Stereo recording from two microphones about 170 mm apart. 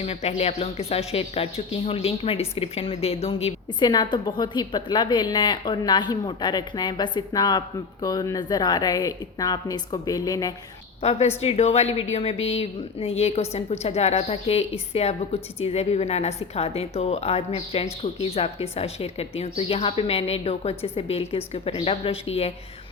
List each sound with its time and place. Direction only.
0.0 s speech: 40° left (ahead or behind); by 10.5 s 20° left (ahead or behind)
11.3 s a woman's voice: 40° left (ahead or behind)